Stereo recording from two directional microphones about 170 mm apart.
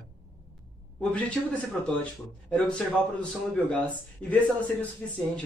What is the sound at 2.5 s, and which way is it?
A man's voice, 5° left (ahead or behind).